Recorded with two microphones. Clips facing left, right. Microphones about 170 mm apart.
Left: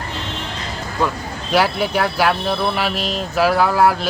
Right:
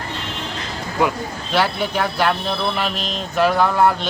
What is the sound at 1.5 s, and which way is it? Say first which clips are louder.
Speech: left 2 dB; 10° left (ahead or behind).